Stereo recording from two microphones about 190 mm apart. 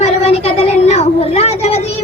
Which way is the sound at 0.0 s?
30° left (ahead or behind).